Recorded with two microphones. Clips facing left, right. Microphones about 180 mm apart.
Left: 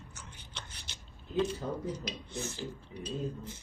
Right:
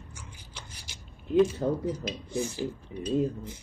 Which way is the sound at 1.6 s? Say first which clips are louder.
Right 9 dB; 40° right (ahead or behind).